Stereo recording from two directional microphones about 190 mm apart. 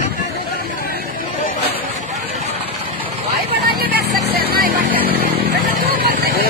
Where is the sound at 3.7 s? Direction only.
55° right (ahead or behind).